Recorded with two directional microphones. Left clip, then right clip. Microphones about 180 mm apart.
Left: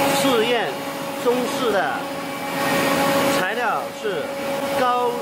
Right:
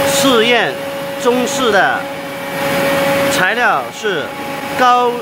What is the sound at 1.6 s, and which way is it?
Speech, 25° right (ahead or behind).